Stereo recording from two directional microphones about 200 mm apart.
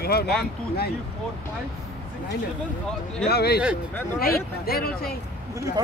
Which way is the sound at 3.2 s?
55° left (ahead or behind).